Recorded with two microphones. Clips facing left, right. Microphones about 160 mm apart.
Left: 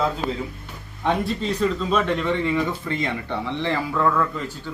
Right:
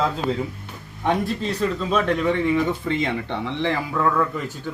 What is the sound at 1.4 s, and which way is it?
Speech, centre (ahead or behind).